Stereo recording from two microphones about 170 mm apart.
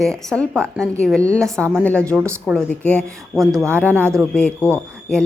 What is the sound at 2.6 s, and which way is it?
Speech, 10° left (ahead or behind).